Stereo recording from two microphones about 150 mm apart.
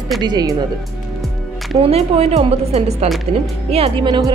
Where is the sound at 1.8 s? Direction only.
45° right (ahead or behind).